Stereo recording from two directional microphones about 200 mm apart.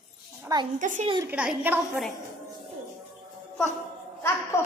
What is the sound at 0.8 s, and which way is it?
Speech, 40° right (ahead or behind).